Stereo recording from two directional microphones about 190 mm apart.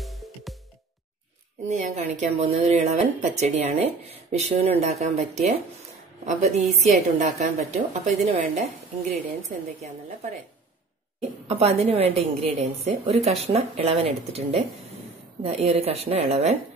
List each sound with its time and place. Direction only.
0.0 s music: centre (ahead or behind)
1.7 s speech: 40° right (ahead or behind)
11.1 s speech: 35° right (ahead or behind)